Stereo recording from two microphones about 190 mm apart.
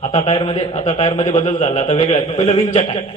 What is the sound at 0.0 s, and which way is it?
A man's voice, 30° left (ahead or behind).